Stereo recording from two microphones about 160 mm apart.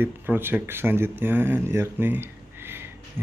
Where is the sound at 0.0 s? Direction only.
15° right (ahead or behind).